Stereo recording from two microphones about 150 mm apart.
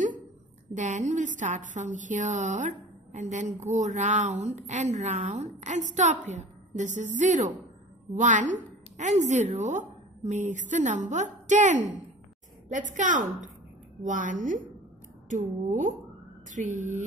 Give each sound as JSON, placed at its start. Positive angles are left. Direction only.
{"t": 0.7, "sound": "a woman's voice", "side_deg": -55}